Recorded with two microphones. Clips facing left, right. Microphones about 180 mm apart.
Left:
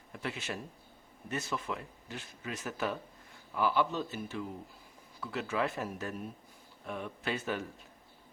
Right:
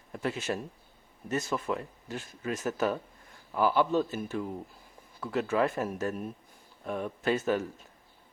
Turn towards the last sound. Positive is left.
turn(degrees=-45)  # may be behind; listen again after turning